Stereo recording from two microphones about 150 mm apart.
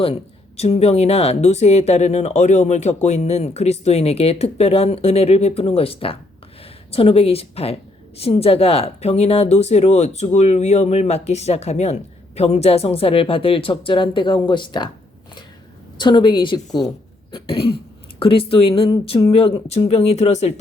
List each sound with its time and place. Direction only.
0.0 s speech: 40° left (ahead or behind)
16.0 s speech: 30° left (ahead or behind)
18.2 s speech: 35° left (ahead or behind)